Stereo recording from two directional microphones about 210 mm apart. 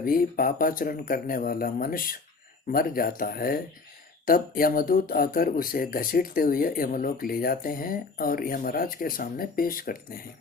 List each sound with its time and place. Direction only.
0.0 s speech: 45° left (ahead or behind)